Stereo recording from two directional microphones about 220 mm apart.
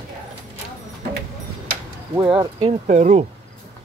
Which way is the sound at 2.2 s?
25° right (ahead or behind).